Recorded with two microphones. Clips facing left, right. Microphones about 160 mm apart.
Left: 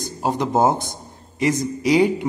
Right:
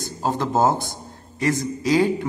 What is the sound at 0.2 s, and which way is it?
A man's voice, 15° left (ahead or behind).